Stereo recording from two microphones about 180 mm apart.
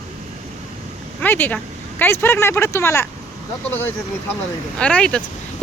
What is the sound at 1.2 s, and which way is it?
Speech, 10° left (ahead or behind).